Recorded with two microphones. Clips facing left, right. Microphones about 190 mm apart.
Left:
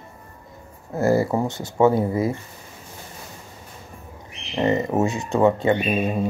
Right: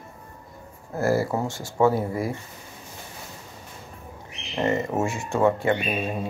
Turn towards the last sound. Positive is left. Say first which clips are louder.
# left 4 dB
turn(degrees=20)  # may be behind; listen again after turning